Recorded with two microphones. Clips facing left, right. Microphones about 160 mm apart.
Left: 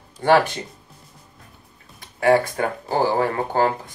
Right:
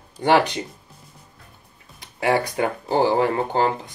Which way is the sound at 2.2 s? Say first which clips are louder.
Left 3 dB; 15° right (ahead or behind).